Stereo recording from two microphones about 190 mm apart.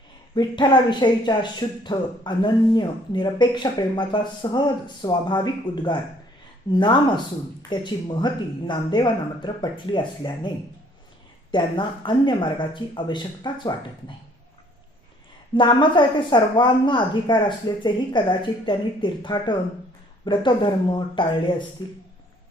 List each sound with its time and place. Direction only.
0.3 s speech: 25° left (ahead or behind)
11.5 s speech: 25° left (ahead or behind)
15.5 s speech: 25° left (ahead or behind)